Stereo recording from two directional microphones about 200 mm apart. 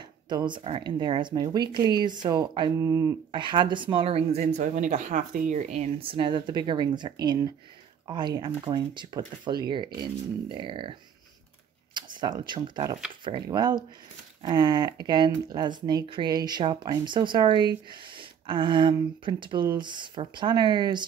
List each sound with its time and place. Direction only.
0.3 s speech: 20° right (ahead or behind)